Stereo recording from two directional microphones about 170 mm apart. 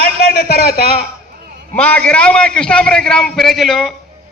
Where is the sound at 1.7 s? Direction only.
10° left (ahead or behind).